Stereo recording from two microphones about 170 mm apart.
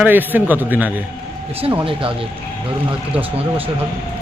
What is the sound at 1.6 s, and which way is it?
Speech, 35° right (ahead or behind).